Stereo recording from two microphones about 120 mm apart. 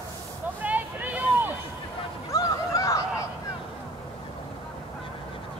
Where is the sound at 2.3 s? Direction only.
25° left (ahead or behind).